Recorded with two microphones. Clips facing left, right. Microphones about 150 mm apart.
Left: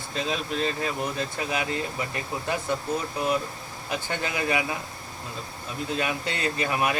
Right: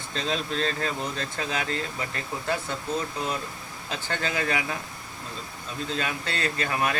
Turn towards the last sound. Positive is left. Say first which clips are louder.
# left 1 dB
turn(degrees=15)  # may be behind; listen again after turning